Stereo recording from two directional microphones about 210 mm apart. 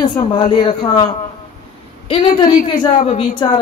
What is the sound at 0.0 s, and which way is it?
Speech, 25° left (ahead or behind).